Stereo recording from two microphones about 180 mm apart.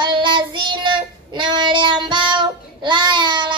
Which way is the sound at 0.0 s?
25° right (ahead or behind).